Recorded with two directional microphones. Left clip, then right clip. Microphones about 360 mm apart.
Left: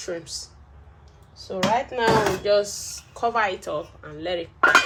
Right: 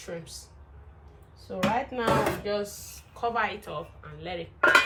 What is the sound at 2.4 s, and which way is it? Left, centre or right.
Speech, left.